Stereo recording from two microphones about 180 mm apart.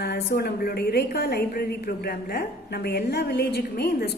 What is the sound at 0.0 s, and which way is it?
A woman's voice, 65° left (ahead or behind).